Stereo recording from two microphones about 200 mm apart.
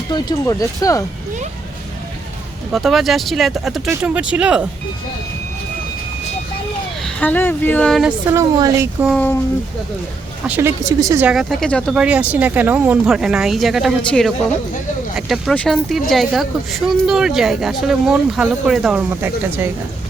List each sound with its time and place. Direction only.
0.1 s speech: 20° left (ahead or behind)
2.7 s speech: centre (ahead or behind)
7.0 s speech: 10° left (ahead or behind)
8.3 s speech: 15° right (ahead or behind)
9.0 s speech: 10° left (ahead or behind)
10.4 s speech: 10° right (ahead or behind)
11.3 s speech: centre (ahead or behind)